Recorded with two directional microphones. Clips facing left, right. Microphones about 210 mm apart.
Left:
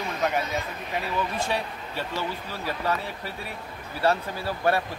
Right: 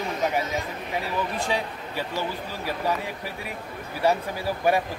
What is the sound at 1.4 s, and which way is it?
Speech, 10° right (ahead or behind).